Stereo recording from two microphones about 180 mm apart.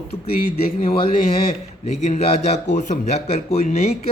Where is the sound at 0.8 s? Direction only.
30° left (ahead or behind).